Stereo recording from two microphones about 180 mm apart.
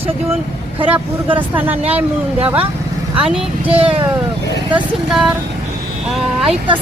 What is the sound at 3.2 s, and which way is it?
Speech, 5° right (ahead or behind).